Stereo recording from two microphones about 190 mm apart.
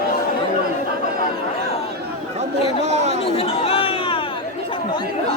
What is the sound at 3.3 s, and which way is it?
Chatter, 30° left (ahead or behind).